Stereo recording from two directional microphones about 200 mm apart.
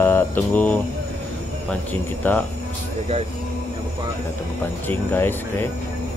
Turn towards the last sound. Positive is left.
turn(degrees=10)  # may be behind; listen again after turning